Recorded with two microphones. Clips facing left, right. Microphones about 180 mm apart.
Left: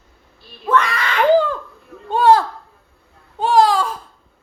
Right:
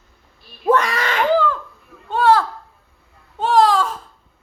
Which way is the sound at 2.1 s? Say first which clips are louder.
Left 2 dB; 15° left (ahead or behind).